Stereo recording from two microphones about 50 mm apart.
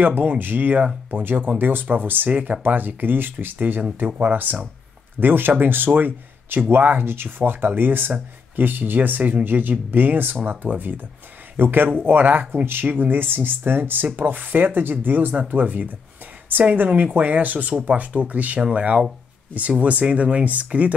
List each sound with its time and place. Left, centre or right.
0.0 s speech: right